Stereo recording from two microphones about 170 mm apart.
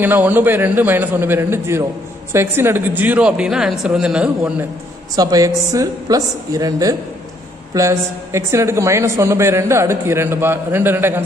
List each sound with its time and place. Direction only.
0.0 s a woman's voice: 10° right (ahead or behind)
5.1 s a woman's voice: 20° right (ahead or behind)